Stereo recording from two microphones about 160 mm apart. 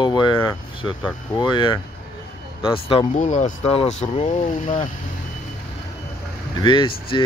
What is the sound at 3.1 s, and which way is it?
Speech, 50° left (ahead or behind).